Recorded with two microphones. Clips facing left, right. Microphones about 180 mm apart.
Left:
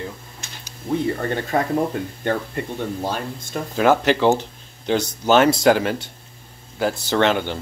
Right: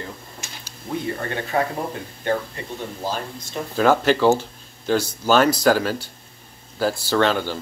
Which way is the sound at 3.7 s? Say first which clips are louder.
Even; 15° left (ahead or behind).